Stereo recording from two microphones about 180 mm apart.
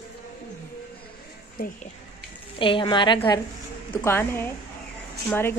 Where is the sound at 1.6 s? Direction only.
55° left (ahead or behind).